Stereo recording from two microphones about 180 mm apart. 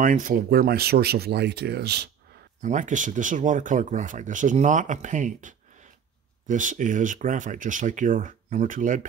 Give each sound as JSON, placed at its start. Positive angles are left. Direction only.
{"t": 0.0, "sound": "speech", "side_deg": -45}
{"t": 2.6, "sound": "speech", "side_deg": -45}